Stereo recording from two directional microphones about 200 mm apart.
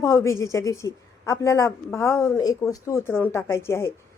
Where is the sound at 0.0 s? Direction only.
15° left (ahead or behind).